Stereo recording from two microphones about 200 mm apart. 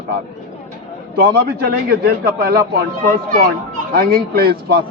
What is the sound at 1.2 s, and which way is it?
A man's voice, 50° right (ahead or behind).